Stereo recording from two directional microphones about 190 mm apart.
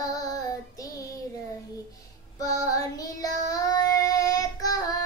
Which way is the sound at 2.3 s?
20° left (ahead or behind).